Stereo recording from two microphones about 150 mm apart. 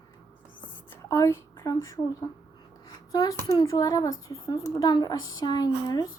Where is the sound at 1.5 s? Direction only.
25° left (ahead or behind).